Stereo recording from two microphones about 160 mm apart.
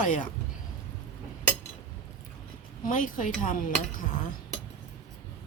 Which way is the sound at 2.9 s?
55° left (ahead or behind).